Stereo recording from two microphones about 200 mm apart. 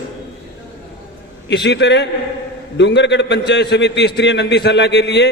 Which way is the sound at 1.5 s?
60° left (ahead or behind).